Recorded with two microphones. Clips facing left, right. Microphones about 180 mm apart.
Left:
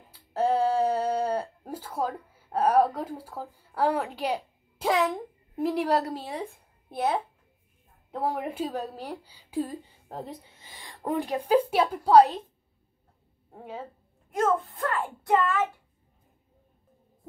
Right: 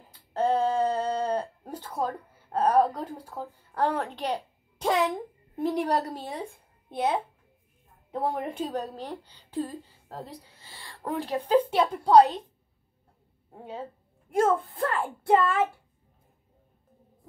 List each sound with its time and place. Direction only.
0.3 s a sound: 10° left (ahead or behind)
8.1 s a woman's voice: centre (ahead or behind)
13.5 s speech: centre (ahead or behind)
14.3 s a child's voice: 30° right (ahead or behind)